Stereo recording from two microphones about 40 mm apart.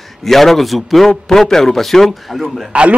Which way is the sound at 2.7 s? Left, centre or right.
Right.